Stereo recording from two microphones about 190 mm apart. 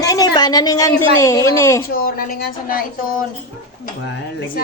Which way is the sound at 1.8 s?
50° left (ahead or behind).